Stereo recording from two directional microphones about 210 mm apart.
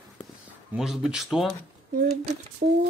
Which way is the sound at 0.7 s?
Centre (ahead or behind).